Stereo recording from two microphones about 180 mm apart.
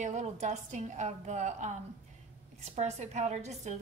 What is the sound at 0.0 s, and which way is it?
A woman's voice, 40° right (ahead or behind).